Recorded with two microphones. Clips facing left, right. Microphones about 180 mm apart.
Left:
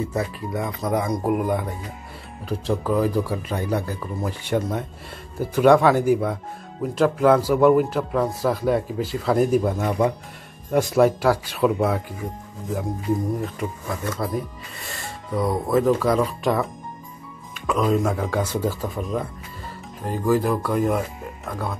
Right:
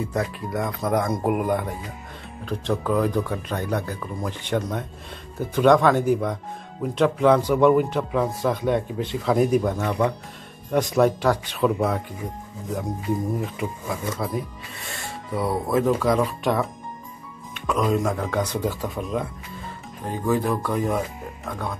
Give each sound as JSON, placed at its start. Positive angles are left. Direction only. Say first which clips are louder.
{"t": 0.1, "sound": "speech", "louder": "even", "side_deg": 5}